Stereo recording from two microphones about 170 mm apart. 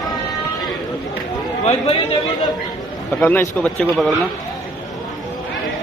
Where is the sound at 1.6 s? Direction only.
35° left (ahead or behind).